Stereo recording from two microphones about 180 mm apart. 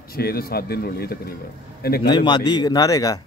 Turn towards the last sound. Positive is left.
turn(degrees=20)  # may be behind; listen again after turning